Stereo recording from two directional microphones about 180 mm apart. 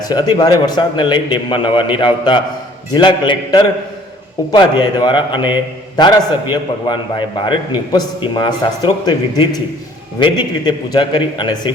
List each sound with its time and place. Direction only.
0.0 s a man's voice: 20° left (ahead or behind)